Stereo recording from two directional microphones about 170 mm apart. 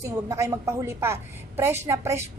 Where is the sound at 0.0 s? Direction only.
15° right (ahead or behind).